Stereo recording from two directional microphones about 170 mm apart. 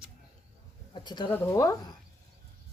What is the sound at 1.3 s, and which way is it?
Speech, 15° left (ahead or behind).